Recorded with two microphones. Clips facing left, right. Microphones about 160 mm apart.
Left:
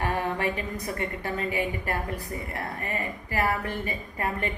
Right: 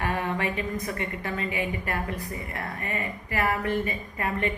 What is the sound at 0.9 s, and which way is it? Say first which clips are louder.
A woman's voice: left 1 dB; 35° left (ahead or behind).